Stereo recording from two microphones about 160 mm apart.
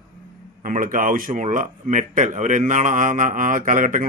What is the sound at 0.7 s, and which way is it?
Speech, 60° right (ahead or behind).